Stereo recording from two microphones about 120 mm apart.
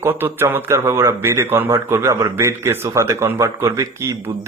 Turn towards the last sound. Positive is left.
turn(degrees=-20)  # may be behind; listen again after turning